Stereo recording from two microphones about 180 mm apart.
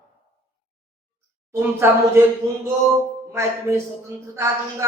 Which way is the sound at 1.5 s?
15° right (ahead or behind).